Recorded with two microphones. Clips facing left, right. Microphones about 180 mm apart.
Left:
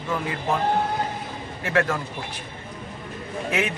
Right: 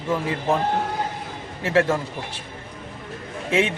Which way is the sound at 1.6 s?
30° right (ahead or behind).